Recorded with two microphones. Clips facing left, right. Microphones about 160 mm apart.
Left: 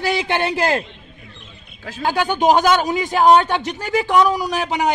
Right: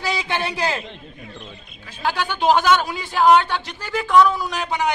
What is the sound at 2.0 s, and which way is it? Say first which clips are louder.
A man's voice: left 4 dB; 15° left (ahead or behind).